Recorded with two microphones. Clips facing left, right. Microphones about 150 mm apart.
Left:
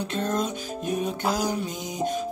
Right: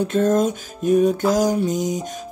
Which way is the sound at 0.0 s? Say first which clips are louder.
Right 9 dB; 45° right (ahead or behind).